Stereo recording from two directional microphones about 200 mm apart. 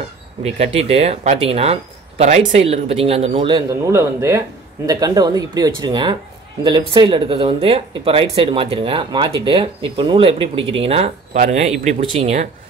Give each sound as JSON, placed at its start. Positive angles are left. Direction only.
{"t": 0.4, "sound": "speech", "side_deg": -30}
{"t": 3.8, "sound": "speech", "side_deg": -15}